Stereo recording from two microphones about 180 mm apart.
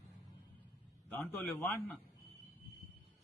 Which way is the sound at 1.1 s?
10° left (ahead or behind).